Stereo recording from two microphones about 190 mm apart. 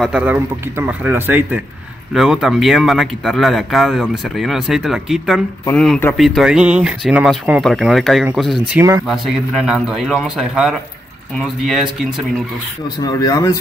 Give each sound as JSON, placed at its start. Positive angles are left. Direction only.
{"t": 0.0, "sound": "speech", "side_deg": -5}
{"t": 12.8, "sound": "speech", "side_deg": 20}